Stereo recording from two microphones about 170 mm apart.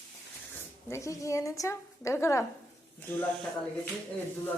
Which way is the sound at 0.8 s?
15° left (ahead or behind).